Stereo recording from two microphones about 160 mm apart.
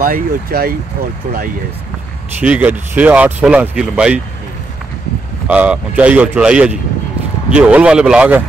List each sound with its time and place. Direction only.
0.0 s speech: 65° right (ahead or behind)
2.4 s speech: 10° right (ahead or behind)
5.5 s speech: 10° right (ahead or behind)